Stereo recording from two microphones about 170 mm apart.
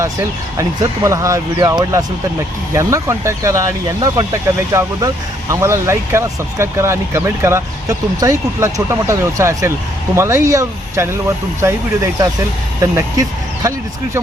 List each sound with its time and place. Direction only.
0.0 s speech: 20° right (ahead or behind)
4.7 s speech: 20° right (ahead or behind)
12.8 s speech: 20° right (ahead or behind)